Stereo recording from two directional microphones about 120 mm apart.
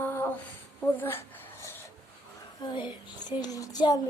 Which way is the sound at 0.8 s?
15° left (ahead or behind).